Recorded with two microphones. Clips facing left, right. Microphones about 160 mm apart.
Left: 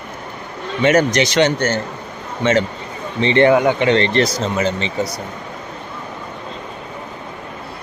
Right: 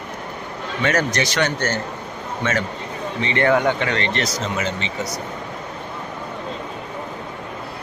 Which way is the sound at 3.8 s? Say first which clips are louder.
Left 8 dB; 30° left (ahead or behind).